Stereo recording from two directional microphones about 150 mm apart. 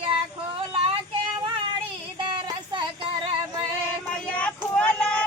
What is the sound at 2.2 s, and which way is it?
Child singing, 30° right (ahead or behind).